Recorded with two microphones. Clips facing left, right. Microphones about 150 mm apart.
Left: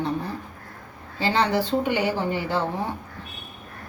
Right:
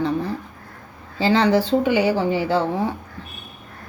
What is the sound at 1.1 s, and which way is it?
Speech, 90° right.